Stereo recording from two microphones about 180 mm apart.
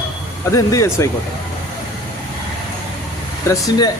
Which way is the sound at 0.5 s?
20° left (ahead or behind).